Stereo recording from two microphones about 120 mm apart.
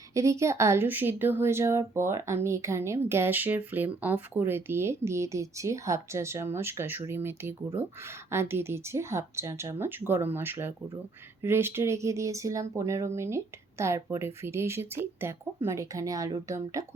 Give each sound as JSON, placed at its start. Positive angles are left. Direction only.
{"t": 0.1, "sound": "speech", "side_deg": -25}